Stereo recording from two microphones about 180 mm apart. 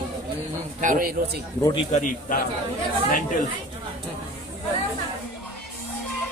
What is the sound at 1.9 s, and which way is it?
Speech, 45° left (ahead or behind).